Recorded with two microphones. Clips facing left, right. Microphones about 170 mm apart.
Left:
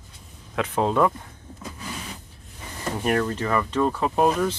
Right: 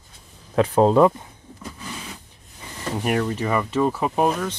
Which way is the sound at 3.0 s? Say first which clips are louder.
Right 1 dB; 10° right (ahead or behind).